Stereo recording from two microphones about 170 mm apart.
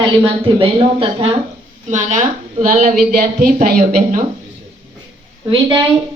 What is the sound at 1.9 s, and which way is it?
A woman's voice, 45° right (ahead or behind).